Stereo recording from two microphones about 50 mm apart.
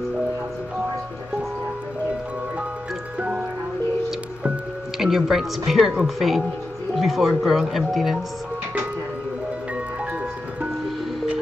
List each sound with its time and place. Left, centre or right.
3.2 s music: right
4.9 s speech: centre